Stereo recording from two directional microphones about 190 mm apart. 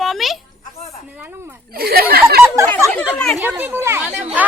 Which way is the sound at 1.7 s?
55° right (ahead or behind).